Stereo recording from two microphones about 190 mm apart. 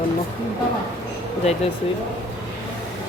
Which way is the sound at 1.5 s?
35° left (ahead or behind).